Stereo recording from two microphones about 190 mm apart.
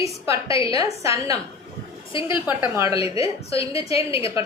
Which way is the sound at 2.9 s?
30° left (ahead or behind).